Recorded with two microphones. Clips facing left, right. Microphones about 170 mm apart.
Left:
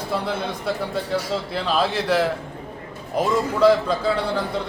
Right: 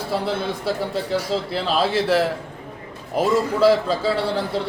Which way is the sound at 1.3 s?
30° right (ahead or behind).